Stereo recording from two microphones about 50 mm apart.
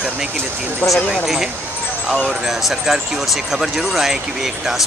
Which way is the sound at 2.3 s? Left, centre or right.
Centre.